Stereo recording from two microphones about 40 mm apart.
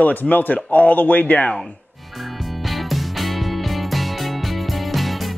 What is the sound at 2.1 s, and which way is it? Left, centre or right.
Music, centre.